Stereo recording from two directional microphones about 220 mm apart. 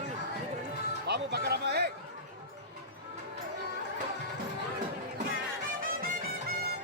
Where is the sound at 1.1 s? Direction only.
50° right (ahead or behind).